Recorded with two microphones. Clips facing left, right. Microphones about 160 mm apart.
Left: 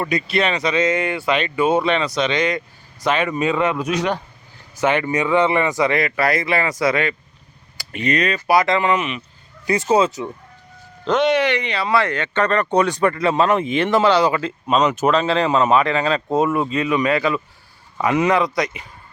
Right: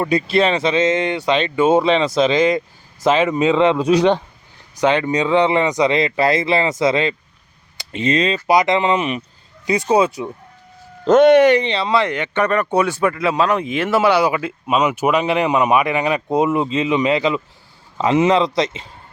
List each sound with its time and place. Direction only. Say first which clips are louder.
0.1 s speech: right 4 dB; 30° right (ahead or behind)
4.8 s speech: right 2 dB; 20° right (ahead or behind)
9.6 s speech: right 1 dB; 15° right (ahead or behind)
11.0 s speech: right 7 dB; 50° right (ahead or behind)
11.6 s speech: right 2 dB; 25° right (ahead or behind)